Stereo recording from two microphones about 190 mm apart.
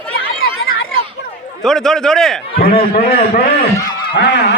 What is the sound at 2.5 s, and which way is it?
Speech, 50° left (ahead or behind).